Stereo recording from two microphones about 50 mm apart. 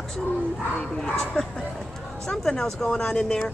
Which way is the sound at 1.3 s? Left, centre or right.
Centre.